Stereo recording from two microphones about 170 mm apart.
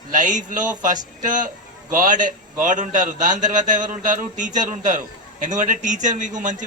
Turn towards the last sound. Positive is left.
turn(degrees=-45)  # may be behind; listen again after turning